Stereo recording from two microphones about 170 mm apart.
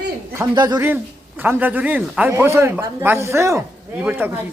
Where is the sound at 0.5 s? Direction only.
20° right (ahead or behind).